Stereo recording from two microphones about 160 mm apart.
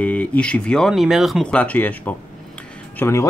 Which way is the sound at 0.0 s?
10° left (ahead or behind).